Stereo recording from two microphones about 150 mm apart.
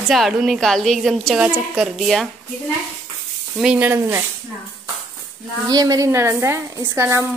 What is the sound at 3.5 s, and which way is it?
Speech, 10° right (ahead or behind).